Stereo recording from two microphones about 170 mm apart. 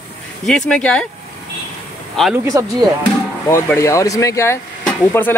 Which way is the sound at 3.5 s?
15° left (ahead or behind).